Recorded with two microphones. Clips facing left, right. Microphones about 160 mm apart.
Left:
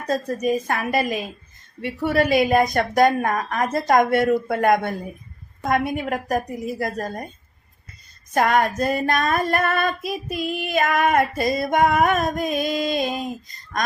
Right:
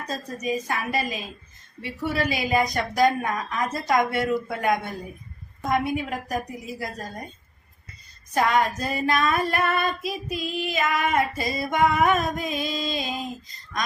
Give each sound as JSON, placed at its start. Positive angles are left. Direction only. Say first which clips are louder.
{"t": 0.1, "sound": "a woman's voice", "louder": "left 7 dB", "side_deg": 55}
{"t": 8.3, "sound": "female singing", "louder": "left 3 dB", "side_deg": 50}